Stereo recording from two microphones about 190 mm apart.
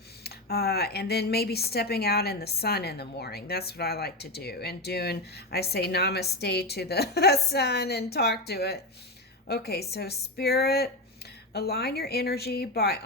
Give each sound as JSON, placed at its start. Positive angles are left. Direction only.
{"t": 0.3, "sound": "speech", "side_deg": 55}